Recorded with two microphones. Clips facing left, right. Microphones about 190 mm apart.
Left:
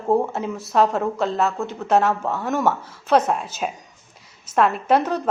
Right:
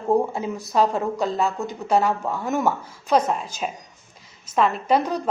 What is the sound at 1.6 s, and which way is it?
Speech, 15° right (ahead or behind).